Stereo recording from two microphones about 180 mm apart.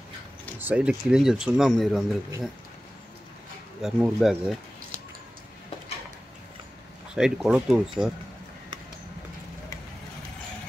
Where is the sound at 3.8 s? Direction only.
5° right (ahead or behind).